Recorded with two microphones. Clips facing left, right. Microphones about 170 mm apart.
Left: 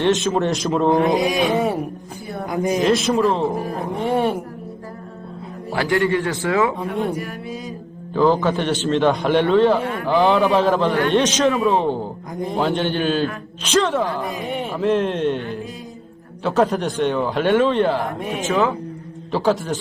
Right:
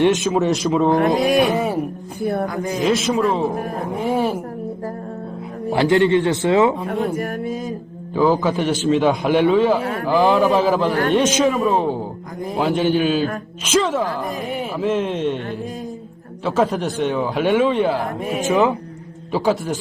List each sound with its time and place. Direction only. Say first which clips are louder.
0.0 s speech: right 2 dB; 10° right (ahead or behind)
0.3 s speech: right 2 dB; centre (ahead or behind)
2.2 s speech: right 9 dB; 55° right (ahead or behind)
2.5 s speech: left 4 dB; 15° left (ahead or behind)
2.8 s speech: right 1 dB; centre (ahead or behind)
5.7 s speech: right 4 dB; 20° right (ahead or behind)
7.2 s speech: right 5 dB; 50° right (ahead or behind)
8.1 s speech: even; 5° right (ahead or behind)
9.8 s speech: right 1 dB; 45° right (ahead or behind)
10.1 s speech: right 1 dB; centre (ahead or behind)